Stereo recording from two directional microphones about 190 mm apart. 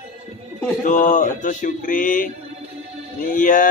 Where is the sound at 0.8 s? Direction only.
40° left (ahead or behind).